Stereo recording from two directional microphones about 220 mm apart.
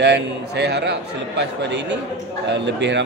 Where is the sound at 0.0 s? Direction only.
50° right (ahead or behind).